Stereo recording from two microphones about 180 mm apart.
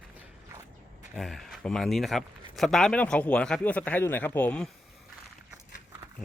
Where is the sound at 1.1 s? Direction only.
Centre (ahead or behind).